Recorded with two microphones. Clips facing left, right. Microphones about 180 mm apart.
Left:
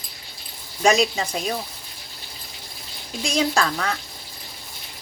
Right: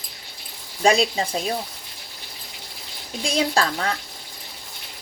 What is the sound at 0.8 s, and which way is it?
Speech, 30° right (ahead or behind).